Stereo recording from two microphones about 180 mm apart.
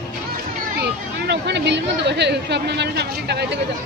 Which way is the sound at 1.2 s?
70° right (ahead or behind).